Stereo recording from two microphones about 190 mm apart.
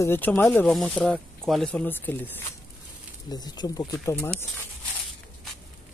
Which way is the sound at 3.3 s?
20° left (ahead or behind).